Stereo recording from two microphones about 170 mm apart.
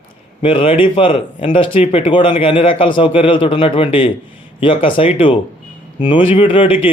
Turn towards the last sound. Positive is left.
turn(degrees=30)  # may be behind; listen again after turning